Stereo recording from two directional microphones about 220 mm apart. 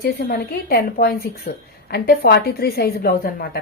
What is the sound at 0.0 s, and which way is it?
A woman's voice, 45° left (ahead or behind).